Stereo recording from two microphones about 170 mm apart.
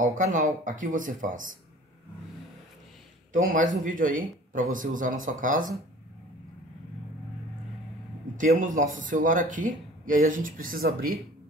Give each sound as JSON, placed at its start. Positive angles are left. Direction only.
{"t": 0.0, "sound": "a man's voice", "side_deg": -50}
{"t": 3.3, "sound": "a man's voice", "side_deg": -50}
{"t": 8.4, "sound": "a man's voice", "side_deg": -50}